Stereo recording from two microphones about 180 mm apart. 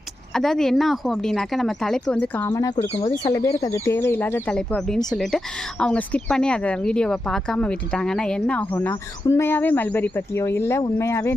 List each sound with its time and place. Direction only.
0.3 s a woman's voice: centre (ahead or behind)
2.5 s a woman's voice: 20° left (ahead or behind)